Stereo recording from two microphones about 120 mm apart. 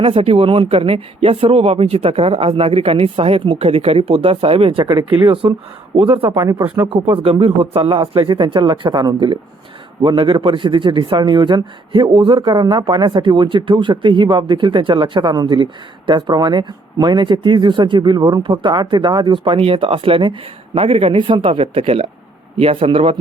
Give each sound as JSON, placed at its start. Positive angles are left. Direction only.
{"t": 0.0, "sound": "a man's voice", "side_deg": -50}
{"t": 6.3, "sound": "speech", "side_deg": -30}
{"t": 6.8, "sound": "a man's voice", "side_deg": -50}